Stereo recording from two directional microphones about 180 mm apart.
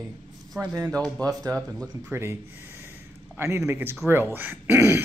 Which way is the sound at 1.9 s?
15° right (ahead or behind).